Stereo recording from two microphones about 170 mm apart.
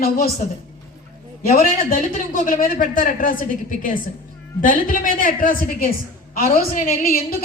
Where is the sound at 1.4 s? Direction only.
60° left (ahead or behind).